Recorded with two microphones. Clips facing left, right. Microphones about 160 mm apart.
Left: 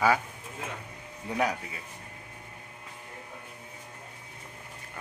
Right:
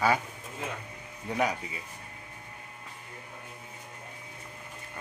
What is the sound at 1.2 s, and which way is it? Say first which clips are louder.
Speech: even; 5° right (ahead or behind).